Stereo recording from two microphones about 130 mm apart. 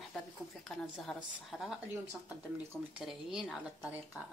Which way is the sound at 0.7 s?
Centre (ahead or behind).